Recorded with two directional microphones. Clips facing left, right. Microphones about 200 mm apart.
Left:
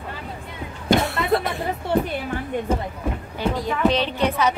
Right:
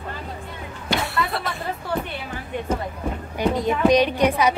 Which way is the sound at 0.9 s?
50° left (ahead or behind).